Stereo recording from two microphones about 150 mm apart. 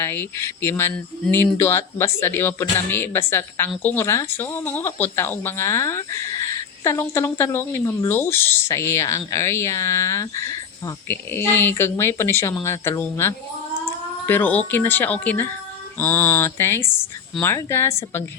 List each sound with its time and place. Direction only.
0.0 s speech: 15° left (ahead or behind)